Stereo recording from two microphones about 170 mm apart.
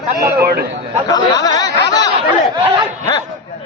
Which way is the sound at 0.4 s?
65° right (ahead or behind).